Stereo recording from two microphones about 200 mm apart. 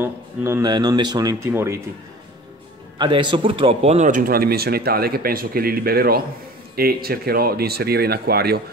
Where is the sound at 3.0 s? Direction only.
25° right (ahead or behind).